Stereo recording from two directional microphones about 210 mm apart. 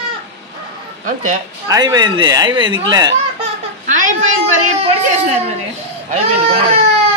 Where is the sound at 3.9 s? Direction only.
35° right (ahead or behind).